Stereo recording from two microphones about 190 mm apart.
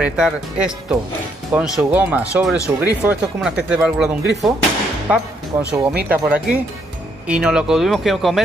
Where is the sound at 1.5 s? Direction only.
5° right (ahead or behind).